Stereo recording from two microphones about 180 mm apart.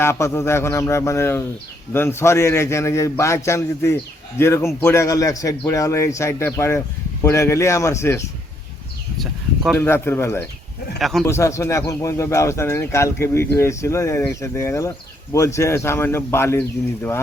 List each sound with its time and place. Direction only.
0.0 s speech: 15° left (ahead or behind)
9.1 s a sound: centre (ahead or behind)
9.7 s speech: 10° left (ahead or behind)